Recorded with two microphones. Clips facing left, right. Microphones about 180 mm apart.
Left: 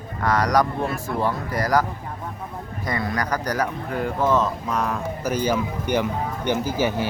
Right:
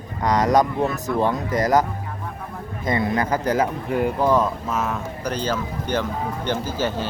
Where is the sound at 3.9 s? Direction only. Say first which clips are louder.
Right 2 dB; 15° right (ahead or behind); by 7.1 s 10° left (ahead or behind).